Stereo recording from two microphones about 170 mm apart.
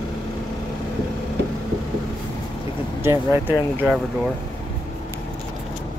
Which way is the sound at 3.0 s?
15° right (ahead or behind).